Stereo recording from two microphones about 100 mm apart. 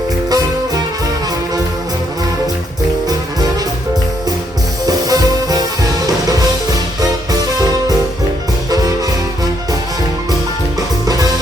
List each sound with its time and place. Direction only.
0.3 s music: 40° right (ahead or behind)
4.9 s music: 40° right (ahead or behind)
10.8 s music: 40° right (ahead or behind)